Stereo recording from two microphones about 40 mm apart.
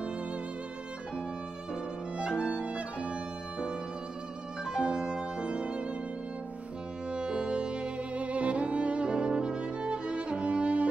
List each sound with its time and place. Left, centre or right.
2.1 s violin: right
4.6 s music: centre
7.1 s music: right